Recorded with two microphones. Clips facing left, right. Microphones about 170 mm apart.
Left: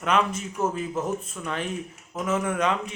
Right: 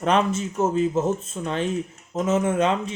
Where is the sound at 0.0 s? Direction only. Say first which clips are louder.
Right 3 dB; 30° right (ahead or behind).